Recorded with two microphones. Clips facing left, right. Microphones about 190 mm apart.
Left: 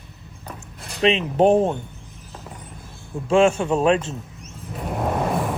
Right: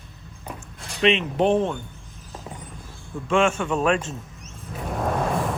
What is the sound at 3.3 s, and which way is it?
Speech, 35° left (ahead or behind).